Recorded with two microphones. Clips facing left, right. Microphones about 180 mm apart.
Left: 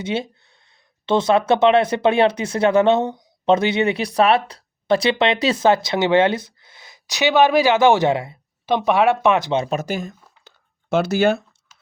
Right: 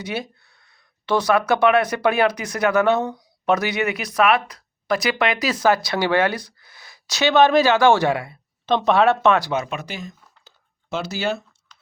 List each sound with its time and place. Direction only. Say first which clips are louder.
0.0 s speech: left 4 dB; 25° left (ahead or behind)
8.6 s speech: even; 10° left (ahead or behind); by 9.7 s 30° left (ahead or behind)
9.7 s a sound: left 7 dB; 45° left (ahead or behind)